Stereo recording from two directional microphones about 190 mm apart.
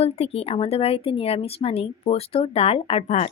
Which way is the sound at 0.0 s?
30° left (ahead or behind).